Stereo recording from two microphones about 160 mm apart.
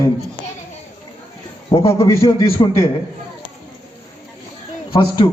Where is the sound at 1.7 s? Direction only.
40° left (ahead or behind).